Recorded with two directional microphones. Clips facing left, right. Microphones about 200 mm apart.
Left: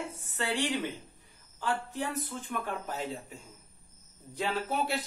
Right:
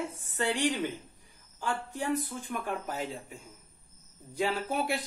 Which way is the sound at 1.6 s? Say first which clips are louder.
Left 1 dB; 15° right (ahead or behind).